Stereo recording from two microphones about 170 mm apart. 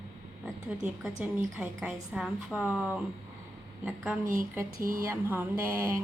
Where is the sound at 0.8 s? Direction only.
5° right (ahead or behind).